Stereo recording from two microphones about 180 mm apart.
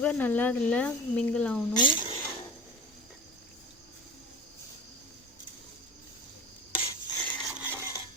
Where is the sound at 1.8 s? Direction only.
25° left (ahead or behind).